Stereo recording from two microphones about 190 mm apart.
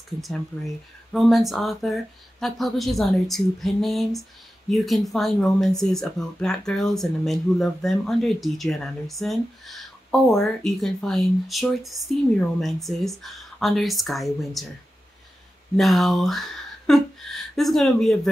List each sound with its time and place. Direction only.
1.1 s speech: centre (ahead or behind)
15.7 s speech: centre (ahead or behind)